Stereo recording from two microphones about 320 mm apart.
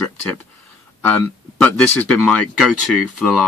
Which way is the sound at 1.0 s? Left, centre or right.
Centre.